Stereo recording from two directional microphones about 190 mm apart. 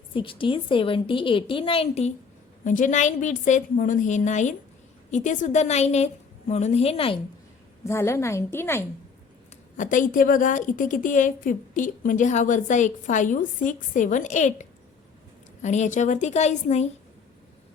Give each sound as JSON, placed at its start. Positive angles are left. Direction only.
{"t": 0.1, "sound": "a woman's voice", "side_deg": 25}
{"t": 7.9, "sound": "a woman's voice", "side_deg": 15}
{"t": 9.7, "sound": "a woman's voice", "side_deg": 45}